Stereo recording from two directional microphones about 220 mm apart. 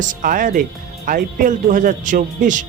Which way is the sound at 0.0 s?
35° right (ahead or behind).